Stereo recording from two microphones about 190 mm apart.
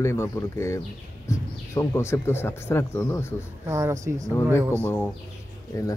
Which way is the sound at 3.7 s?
15° right (ahead or behind).